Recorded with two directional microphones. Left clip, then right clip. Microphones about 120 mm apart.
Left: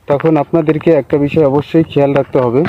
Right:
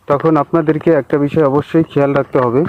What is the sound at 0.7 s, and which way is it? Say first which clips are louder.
Speech: left 2 dB; 40° right (ahead or behind).